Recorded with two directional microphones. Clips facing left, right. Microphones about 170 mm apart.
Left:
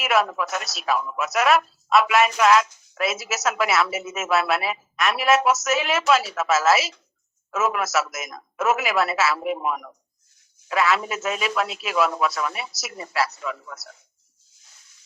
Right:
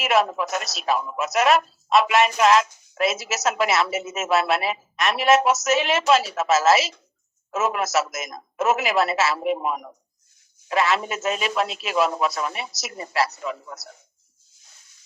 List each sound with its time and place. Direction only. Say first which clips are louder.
0.2 s a woman's voice: right 1 dB; 25° right (ahead or behind)
13.4 s speech: right 1 dB; 25° right (ahead or behind)